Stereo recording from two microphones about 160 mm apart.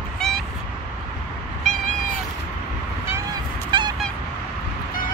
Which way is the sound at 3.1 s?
25° right (ahead or behind).